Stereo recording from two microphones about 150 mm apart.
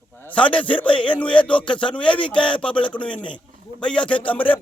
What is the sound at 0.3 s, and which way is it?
Speech, 10° left (ahead or behind).